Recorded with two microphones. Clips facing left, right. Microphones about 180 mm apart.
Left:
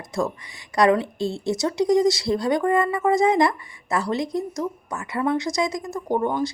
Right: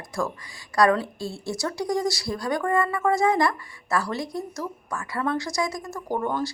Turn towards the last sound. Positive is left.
turn(degrees=20)  # may be behind; listen again after turning